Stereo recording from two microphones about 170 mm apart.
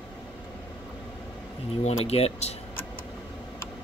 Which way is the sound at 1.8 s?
35° left (ahead or behind).